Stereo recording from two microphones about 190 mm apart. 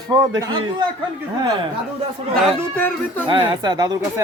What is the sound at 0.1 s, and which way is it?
Speech, 20° right (ahead or behind).